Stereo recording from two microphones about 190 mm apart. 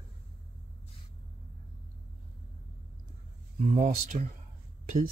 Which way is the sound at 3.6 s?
40° right (ahead or behind).